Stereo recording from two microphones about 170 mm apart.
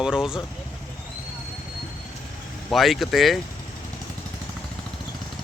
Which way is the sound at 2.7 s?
Centre (ahead or behind).